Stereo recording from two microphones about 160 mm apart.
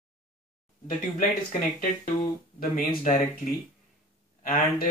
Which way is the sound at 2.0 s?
55° left (ahead or behind).